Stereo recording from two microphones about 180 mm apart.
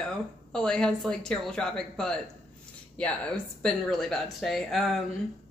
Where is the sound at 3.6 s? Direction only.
Centre (ahead or behind).